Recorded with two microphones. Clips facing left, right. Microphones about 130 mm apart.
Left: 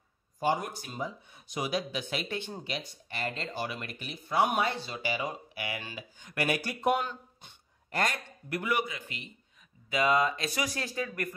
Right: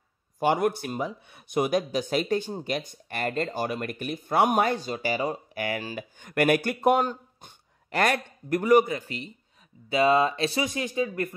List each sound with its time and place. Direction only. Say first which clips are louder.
0.4 s speech: right 6 dB; 65° right (ahead or behind); by 5.9 s 40° right (ahead or behind)
5.9 s speech: right 9 dB; 55° right (ahead or behind)
7.9 s a man's voice: right 7 dB; 70° right (ahead or behind)
8.5 s speech: right 11 dB; 40° right (ahead or behind); by 11.3 s 25° right (ahead or behind)